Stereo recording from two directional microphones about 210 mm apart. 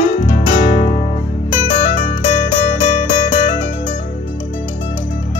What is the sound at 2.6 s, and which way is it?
Music, 25° left (ahead or behind).